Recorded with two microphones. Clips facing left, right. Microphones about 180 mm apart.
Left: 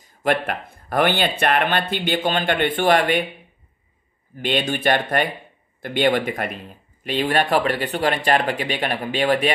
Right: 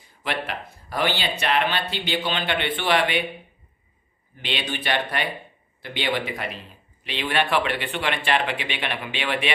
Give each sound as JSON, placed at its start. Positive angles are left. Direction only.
{"t": 0.0, "sound": "speech", "side_deg": 45}
{"t": 4.4, "sound": "speech", "side_deg": 45}